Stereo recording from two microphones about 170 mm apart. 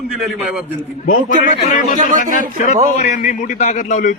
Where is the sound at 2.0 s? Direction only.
50° right (ahead or behind).